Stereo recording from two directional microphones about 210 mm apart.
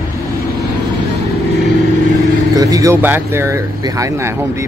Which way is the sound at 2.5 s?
15° right (ahead or behind).